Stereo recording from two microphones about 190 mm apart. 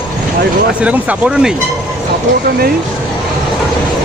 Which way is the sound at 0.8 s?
5° right (ahead or behind).